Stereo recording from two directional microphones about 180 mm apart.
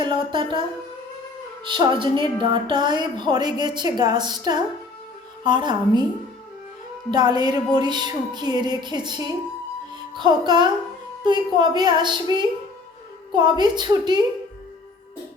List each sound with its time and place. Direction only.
0.0 s a sound: 25° right (ahead or behind)
1.6 s speech: 25° right (ahead or behind)
7.1 s speech: 20° right (ahead or behind)
9.9 s music: 25° right (ahead or behind)
11.2 s speech: 25° right (ahead or behind)